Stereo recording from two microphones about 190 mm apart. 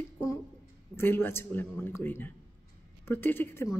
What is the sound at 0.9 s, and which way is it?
A woman's voice, 10° left (ahead or behind).